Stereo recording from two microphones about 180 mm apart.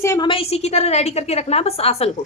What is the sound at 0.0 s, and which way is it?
Speech, 15° left (ahead or behind).